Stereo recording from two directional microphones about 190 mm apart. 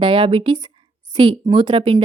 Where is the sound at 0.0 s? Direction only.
25° right (ahead or behind).